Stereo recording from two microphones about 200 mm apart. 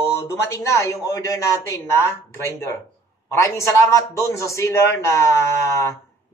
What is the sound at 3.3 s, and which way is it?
A man's voice, 15° left (ahead or behind).